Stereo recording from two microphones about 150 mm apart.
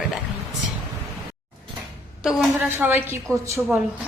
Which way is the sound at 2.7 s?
15° right (ahead or behind).